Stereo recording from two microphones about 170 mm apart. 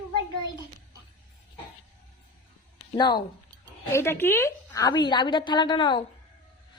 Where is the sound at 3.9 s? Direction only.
15° left (ahead or behind).